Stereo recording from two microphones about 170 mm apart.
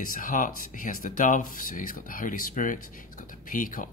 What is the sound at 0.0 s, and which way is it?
Speech, 55° left (ahead or behind).